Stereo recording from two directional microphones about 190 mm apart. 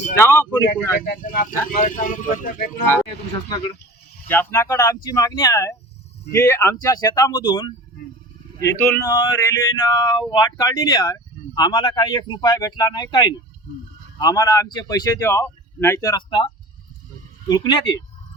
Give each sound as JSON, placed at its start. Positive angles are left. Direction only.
{"t": 0.2, "sound": "speech", "side_deg": 15}
{"t": 1.0, "sound": "speech", "side_deg": 50}
{"t": 4.3, "sound": "speech", "side_deg": 10}
{"t": 8.6, "sound": "speech", "side_deg": 15}
{"t": 17.5, "sound": "speech", "side_deg": 20}